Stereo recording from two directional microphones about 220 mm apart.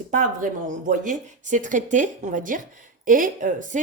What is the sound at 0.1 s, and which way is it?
Speech, 35° right (ahead or behind).